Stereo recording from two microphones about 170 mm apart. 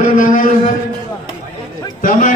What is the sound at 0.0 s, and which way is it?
Speech, 50° left (ahead or behind).